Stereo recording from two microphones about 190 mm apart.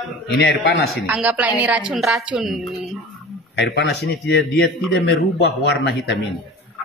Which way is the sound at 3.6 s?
60° left (ahead or behind).